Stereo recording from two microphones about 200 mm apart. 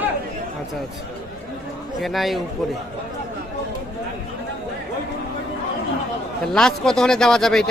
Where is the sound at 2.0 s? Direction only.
Centre (ahead or behind).